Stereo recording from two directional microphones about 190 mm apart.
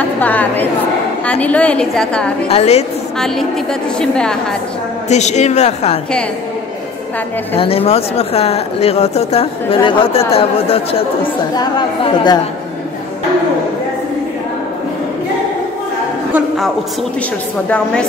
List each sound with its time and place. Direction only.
0.2 s a woman's voice: 10° left (ahead or behind)
2.4 s speech: 35° left (ahead or behind)
4.0 s a woman's voice: 5° left (ahead or behind)
5.1 s speech: 35° left (ahead or behind)
7.5 s a woman's voice: 30° left (ahead or behind)
16.3 s a woman's voice: centre (ahead or behind)